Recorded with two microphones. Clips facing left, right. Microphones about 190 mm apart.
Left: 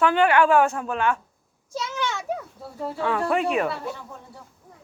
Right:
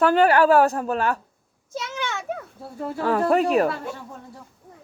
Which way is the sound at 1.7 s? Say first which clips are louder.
Left 1 dB; 55° right (ahead or behind).